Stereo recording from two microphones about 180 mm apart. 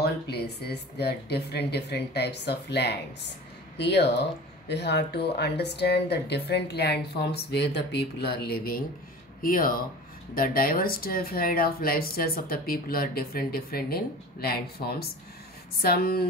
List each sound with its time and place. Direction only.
0.0 s speech: 65° left (ahead or behind)